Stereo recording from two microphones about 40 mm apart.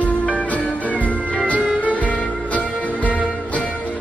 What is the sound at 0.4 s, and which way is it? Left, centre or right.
Music, left.